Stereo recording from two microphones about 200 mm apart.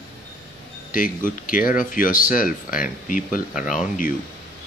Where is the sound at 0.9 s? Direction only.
45° left (ahead or behind).